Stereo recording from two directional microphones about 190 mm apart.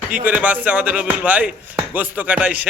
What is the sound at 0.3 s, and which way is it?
Speech, 10° right (ahead or behind).